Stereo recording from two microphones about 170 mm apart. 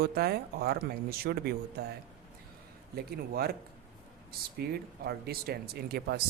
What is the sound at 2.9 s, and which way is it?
Speech, 65° right (ahead or behind).